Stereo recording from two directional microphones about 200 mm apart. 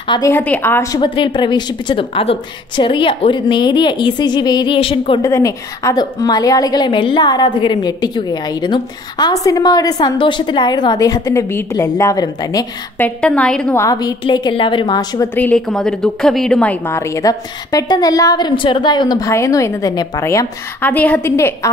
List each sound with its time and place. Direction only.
0.1 s a woman's voice: 15° left (ahead or behind)
1.0 s a woman's voice: 25° left (ahead or behind)
13.2 s a woman's voice: 5° left (ahead or behind)
13.8 s a woman's voice: 20° left (ahead or behind)
15.3 s a woman's voice: 5° left (ahead or behind)